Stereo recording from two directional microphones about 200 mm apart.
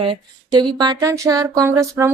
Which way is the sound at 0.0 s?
25° right (ahead or behind).